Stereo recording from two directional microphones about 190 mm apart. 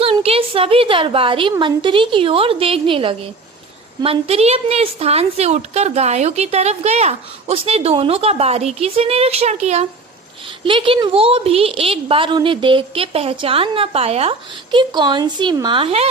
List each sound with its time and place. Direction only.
0.0 s a woman's voice: 30° right (ahead or behind)